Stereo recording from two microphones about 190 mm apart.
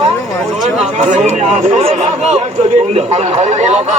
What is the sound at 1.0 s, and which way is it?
Speech, 40° right (ahead or behind).